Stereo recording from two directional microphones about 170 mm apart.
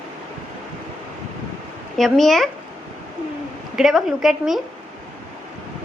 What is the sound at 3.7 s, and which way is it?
Speech, centre (ahead or behind).